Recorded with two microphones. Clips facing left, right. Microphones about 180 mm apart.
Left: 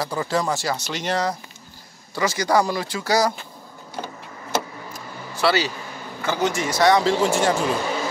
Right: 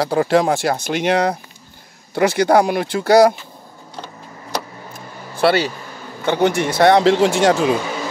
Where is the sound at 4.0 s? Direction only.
Centre (ahead or behind).